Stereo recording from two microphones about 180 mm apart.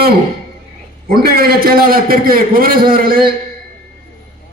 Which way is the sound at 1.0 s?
55° right (ahead or behind).